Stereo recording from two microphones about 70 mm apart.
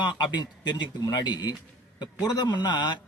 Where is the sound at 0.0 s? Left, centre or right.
Left.